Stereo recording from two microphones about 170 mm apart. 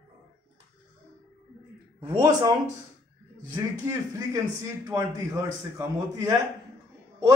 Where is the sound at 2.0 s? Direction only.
25° right (ahead or behind).